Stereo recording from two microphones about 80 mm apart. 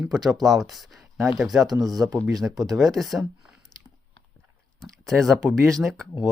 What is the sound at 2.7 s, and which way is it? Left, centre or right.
Speech, centre.